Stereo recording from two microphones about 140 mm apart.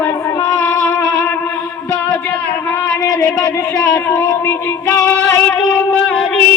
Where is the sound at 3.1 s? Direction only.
20° left (ahead or behind).